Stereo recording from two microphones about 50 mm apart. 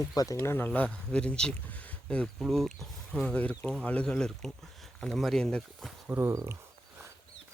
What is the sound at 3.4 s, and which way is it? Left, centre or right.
Speech, left.